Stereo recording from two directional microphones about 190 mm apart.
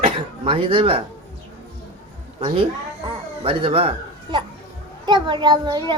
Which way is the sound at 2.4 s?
30° right (ahead or behind).